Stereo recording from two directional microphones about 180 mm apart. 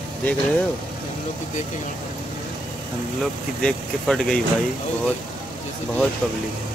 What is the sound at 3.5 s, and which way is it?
Speech, 5° left (ahead or behind).